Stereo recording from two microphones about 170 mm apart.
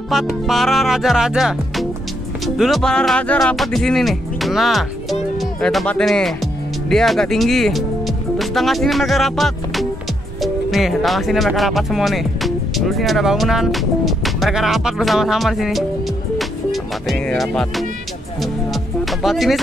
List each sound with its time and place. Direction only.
0.1 s speech: centre (ahead or behind)
16.3 s music: centre (ahead or behind)